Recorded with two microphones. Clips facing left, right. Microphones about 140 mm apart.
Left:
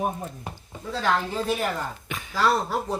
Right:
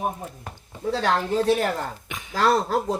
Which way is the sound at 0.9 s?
70° right (ahead or behind).